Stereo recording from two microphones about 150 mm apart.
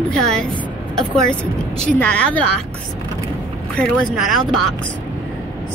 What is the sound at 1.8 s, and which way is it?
Speech, 10° left (ahead or behind).